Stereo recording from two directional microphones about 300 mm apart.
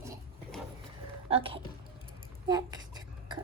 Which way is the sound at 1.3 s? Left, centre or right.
Centre.